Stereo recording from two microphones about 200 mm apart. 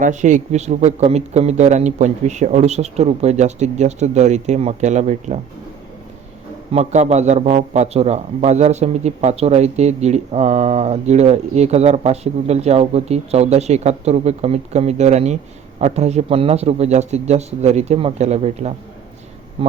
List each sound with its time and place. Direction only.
0.0 s a man's voice: 40° right (ahead or behind)
6.7 s a man's voice: 35° right (ahead or behind)